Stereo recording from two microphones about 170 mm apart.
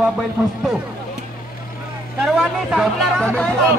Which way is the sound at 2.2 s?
Centre (ahead or behind).